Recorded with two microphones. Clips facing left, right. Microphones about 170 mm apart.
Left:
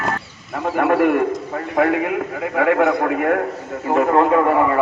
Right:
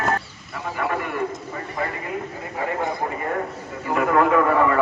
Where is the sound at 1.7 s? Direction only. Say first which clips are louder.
Left 11 dB; 75° left (ahead or behind).